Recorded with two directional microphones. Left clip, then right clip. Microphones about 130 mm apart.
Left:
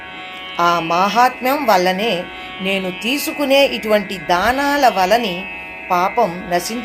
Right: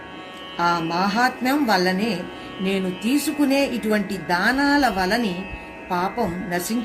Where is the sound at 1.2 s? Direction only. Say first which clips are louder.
Left 6 dB; 5° left (ahead or behind).